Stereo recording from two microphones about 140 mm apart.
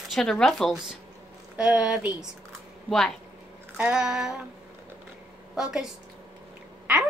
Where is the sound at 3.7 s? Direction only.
5° right (ahead or behind).